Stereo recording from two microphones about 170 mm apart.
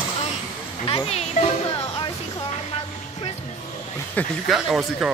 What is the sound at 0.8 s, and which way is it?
Speech, 35° left (ahead or behind).